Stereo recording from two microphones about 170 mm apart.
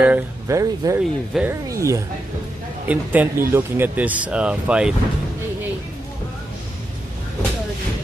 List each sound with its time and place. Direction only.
0.0 s speech: 15° right (ahead or behind)